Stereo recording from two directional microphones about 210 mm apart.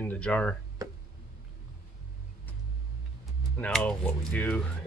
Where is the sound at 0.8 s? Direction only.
15° right (ahead or behind).